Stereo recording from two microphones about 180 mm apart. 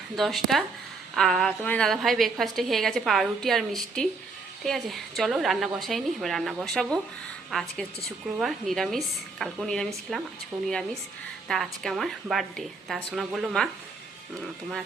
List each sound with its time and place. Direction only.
0.2 s a woman's voice: centre (ahead or behind)
10.5 s speech: 15° right (ahead or behind)
11.4 s a woman's voice: centre (ahead or behind)